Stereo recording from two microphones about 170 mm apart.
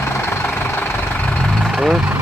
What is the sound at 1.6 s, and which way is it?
Vehicle, centre (ahead or behind).